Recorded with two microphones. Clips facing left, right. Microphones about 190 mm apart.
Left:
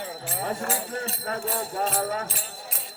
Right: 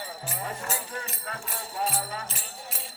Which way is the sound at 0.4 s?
50° left (ahead or behind).